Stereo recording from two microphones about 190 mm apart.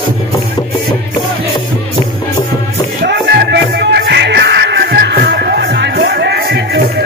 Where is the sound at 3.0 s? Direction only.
60° right (ahead or behind).